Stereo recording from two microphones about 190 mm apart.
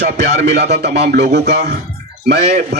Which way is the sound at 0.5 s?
60° right (ahead or behind).